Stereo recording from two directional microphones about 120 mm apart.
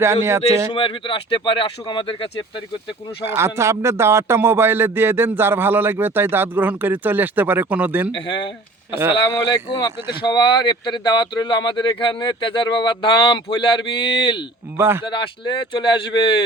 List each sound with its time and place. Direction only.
0.0 s a man's voice: 20° right (ahead or behind)
0.7 s speech: 45° left (ahead or behind)
3.2 s a man's voice: 20° right (ahead or behind)
8.1 s speech: 40° left (ahead or behind)
9.5 s speech: 40° left (ahead or behind)
14.8 s a man's voice: 20° right (ahead or behind)
15.0 s speech: 40° left (ahead or behind)